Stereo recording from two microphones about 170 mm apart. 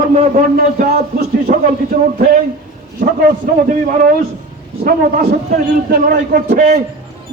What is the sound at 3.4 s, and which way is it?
Speech, 55° right (ahead or behind).